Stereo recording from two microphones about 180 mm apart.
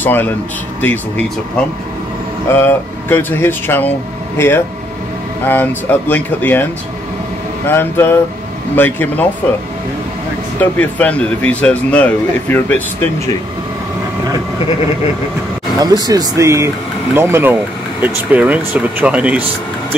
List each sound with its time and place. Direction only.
0.0 s speech: 10° left (ahead or behind)
2.5 s speech: 10° left (ahead or behind)
10.6 s speech: 10° left (ahead or behind)
15.8 s speech: 20° right (ahead or behind)